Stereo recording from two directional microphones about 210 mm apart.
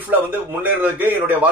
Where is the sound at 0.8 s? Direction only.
10° right (ahead or behind).